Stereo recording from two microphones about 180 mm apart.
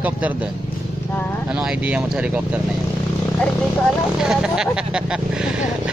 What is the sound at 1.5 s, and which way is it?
Speech, 5° right (ahead or behind).